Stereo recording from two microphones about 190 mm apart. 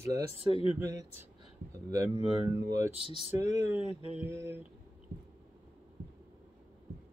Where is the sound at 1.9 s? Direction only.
20° right (ahead or behind).